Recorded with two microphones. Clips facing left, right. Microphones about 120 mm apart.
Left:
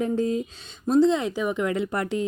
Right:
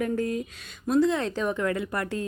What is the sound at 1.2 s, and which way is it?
Speech, 10° left (ahead or behind).